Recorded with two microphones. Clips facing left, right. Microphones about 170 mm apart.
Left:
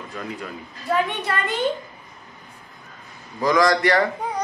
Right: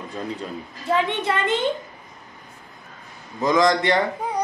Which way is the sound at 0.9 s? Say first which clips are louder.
Right 1 dB; 25° right (ahead or behind).